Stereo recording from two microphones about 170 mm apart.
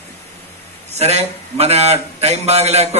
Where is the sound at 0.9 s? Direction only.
40° right (ahead or behind).